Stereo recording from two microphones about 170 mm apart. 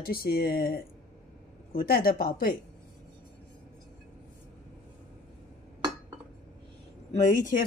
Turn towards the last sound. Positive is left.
turn(degrees=50)  # may be behind; listen again after turning